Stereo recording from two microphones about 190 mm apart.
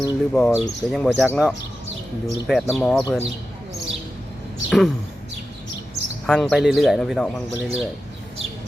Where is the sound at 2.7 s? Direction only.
Centre (ahead or behind).